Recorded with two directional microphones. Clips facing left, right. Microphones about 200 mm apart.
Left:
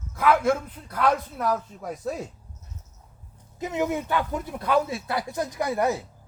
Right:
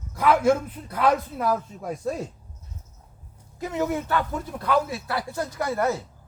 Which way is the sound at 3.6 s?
15° left (ahead or behind).